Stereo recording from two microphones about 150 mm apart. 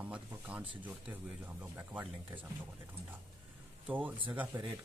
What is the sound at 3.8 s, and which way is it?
Speech, 10° right (ahead or behind).